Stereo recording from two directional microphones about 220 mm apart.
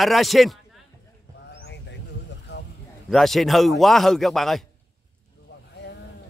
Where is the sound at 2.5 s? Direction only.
50° left (ahead or behind).